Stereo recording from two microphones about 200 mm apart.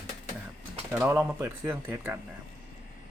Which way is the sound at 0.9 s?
10° right (ahead or behind).